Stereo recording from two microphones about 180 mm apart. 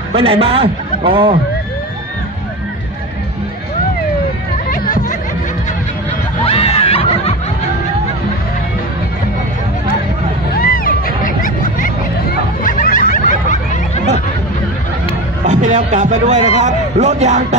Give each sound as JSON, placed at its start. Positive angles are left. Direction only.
{"t": 0.1, "sound": "a man's voice", "side_deg": -30}
{"t": 6.4, "sound": "snicker", "side_deg": 30}
{"t": 10.5, "sound": "a sound", "side_deg": 50}
{"t": 12.6, "sound": "snicker", "side_deg": 50}
{"t": 15.4, "sound": "a man's voice", "side_deg": -45}